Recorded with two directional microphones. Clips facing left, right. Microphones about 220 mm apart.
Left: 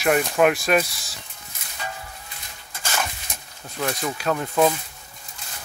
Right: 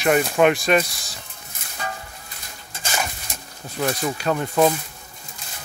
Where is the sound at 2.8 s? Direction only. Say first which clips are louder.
Right 1 dB; 15° right (ahead or behind).